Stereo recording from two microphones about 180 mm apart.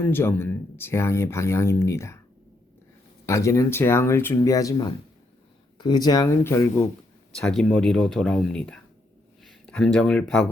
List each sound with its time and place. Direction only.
0.0 s speech: 10° left (ahead or behind)
3.2 s speech: 15° left (ahead or behind)